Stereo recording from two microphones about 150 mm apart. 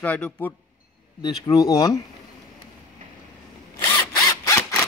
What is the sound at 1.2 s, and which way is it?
Speech, 25° left (ahead or behind).